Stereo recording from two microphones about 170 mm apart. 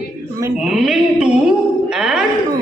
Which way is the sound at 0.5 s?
5° right (ahead or behind).